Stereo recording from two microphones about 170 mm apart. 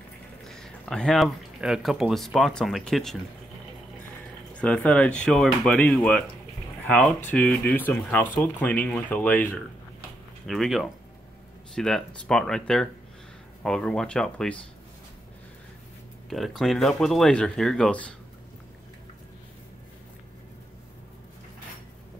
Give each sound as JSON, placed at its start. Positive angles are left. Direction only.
{"t": 0.5, "sound": "speech", "side_deg": 5}
{"t": 4.6, "sound": "speech", "side_deg": 5}
{"t": 16.3, "sound": "speech", "side_deg": 0}